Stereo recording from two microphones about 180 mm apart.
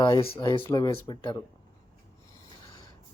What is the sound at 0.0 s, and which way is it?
Speech, 25° left (ahead or behind).